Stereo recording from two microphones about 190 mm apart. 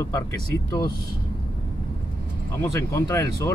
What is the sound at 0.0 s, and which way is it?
Speech, 15° left (ahead or behind).